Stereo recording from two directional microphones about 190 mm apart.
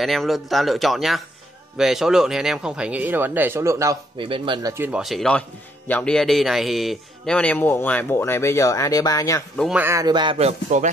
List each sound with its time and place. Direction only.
0.0 s speech: centre (ahead or behind); by 4.7 s 25° right (ahead or behind)
4.7 s a man's voice: 5° right (ahead or behind); by 9.4 s 20° left (ahead or behind)
9.6 s speech: 5° right (ahead or behind); by 10.9 s 35° right (ahead or behind)